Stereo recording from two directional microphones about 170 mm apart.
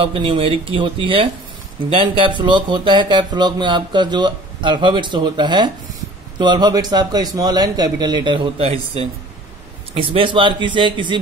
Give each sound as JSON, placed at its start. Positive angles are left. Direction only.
{"t": 0.0, "sound": "speech", "side_deg": -30}
{"t": 9.9, "sound": "speech", "side_deg": -30}